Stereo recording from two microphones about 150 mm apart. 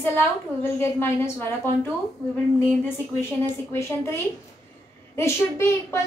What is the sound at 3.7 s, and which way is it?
A woman's voice, 20° left (ahead or behind).